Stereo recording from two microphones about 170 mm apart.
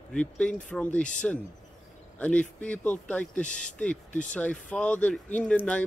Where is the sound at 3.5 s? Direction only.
45° left (ahead or behind).